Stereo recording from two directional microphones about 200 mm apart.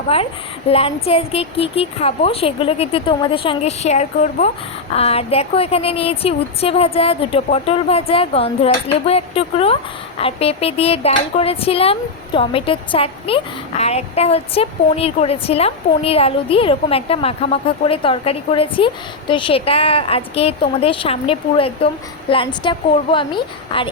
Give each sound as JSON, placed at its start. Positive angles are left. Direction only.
{"t": 0.1, "sound": "a woman's voice", "side_deg": 30}